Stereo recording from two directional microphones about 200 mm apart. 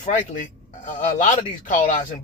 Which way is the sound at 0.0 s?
40° left (ahead or behind).